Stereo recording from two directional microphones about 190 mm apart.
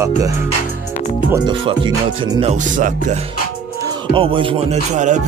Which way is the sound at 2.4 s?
40° right (ahead or behind).